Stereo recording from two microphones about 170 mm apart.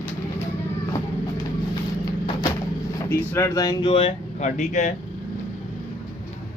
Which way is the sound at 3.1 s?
15° left (ahead or behind).